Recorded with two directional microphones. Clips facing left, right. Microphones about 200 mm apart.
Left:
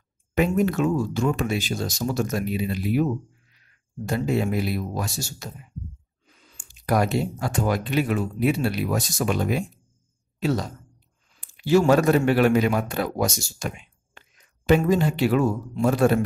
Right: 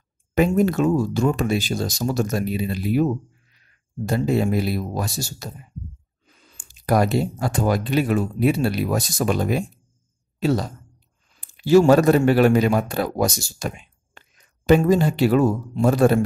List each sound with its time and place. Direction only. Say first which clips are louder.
0.3 s speech: right 3 dB; 40° right (ahead or behind)